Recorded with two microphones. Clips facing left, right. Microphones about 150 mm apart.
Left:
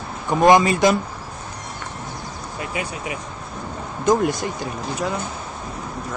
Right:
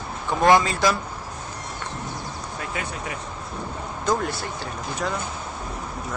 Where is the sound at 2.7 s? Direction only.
10° left (ahead or behind).